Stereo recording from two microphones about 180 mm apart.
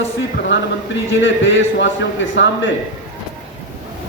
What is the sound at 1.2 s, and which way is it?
A man's voice, 90° left.